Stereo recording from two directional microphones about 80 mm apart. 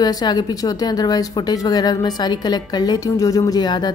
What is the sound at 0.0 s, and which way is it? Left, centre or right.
A woman's voice, left.